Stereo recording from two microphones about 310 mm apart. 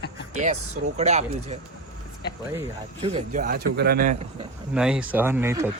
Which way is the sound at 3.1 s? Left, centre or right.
Right.